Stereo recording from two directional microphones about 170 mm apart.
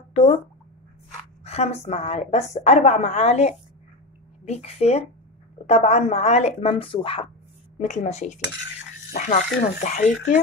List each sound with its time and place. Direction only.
0.1 s speech: 40° left (ahead or behind)
1.4 s a woman's voice: 40° left (ahead or behind)